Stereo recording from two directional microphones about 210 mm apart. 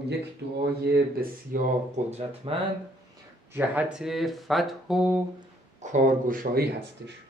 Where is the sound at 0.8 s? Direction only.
45° right (ahead or behind); by 2.6 s 30° right (ahead or behind).